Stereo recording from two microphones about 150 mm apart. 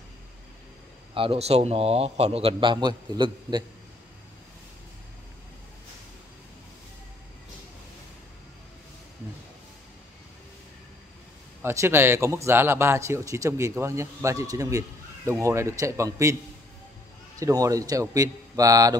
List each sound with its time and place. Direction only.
1.1 s a man's voice: 40° right (ahead or behind)
11.6 s speech: 20° right (ahead or behind)
17.4 s speech: 25° right (ahead or behind)